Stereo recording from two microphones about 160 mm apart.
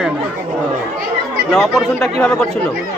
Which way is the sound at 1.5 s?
Centre (ahead or behind).